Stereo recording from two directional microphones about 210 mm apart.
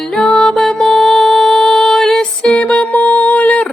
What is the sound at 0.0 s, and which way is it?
Music, centre (ahead or behind).